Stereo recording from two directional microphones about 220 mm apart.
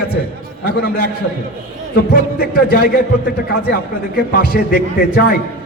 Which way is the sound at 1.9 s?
45° left (ahead or behind).